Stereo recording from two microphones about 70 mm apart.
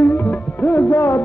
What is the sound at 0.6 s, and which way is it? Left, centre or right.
Music, left.